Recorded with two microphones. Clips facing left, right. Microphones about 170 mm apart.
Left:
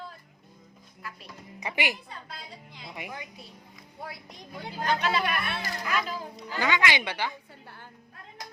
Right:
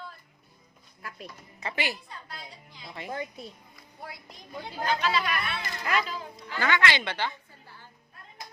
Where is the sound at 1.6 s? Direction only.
15° left (ahead or behind).